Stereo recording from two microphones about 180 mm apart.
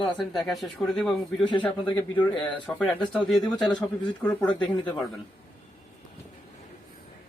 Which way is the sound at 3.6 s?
25° left (ahead or behind).